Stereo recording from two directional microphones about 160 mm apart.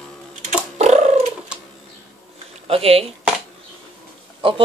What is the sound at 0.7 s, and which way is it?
Cat, 45° right (ahead or behind).